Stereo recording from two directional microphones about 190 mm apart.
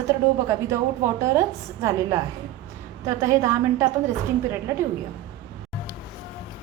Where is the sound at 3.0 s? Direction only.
15° right (ahead or behind).